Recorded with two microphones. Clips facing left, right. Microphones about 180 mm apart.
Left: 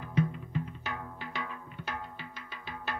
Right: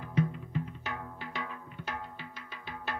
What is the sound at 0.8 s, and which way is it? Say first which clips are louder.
Music: even; 35° right (ahead or behind).